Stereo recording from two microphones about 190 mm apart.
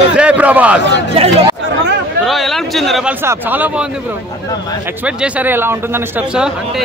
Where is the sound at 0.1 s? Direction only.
5° right (ahead or behind).